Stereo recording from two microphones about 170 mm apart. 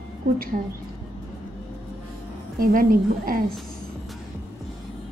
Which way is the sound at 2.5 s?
55° right (ahead or behind).